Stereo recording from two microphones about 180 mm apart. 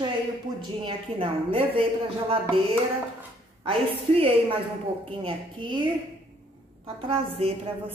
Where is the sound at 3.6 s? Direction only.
30° right (ahead or behind).